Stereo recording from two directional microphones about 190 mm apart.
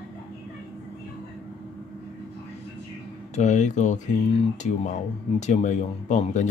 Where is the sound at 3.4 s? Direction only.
40° left (ahead or behind).